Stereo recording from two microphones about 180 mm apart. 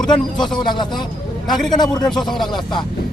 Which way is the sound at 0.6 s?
25° left (ahead or behind).